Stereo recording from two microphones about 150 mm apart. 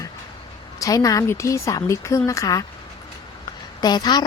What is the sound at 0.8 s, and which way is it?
Speech, 25° left (ahead or behind).